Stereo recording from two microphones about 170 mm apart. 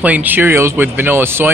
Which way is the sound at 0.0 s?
10° right (ahead or behind).